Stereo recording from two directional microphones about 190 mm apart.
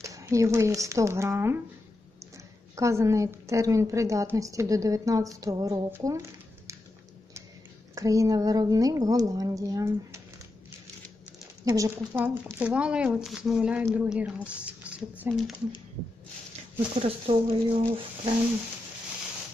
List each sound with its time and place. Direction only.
0.0 s a woman's voice: 15° right (ahead or behind)
7.9 s a woman's voice: 15° right (ahead or behind)
11.6 s speech: 15° right (ahead or behind); by 15.5 s centre (ahead or behind)
16.9 s speech: 30° right (ahead or behind)